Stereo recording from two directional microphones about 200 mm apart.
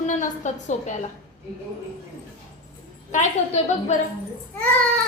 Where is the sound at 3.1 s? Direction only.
35° left (ahead or behind).